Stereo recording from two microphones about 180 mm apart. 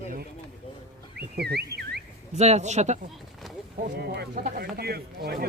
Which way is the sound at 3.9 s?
65° right (ahead or behind).